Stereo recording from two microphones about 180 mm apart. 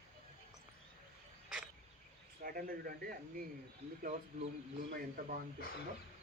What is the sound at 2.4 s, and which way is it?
Speech, 55° right (ahead or behind).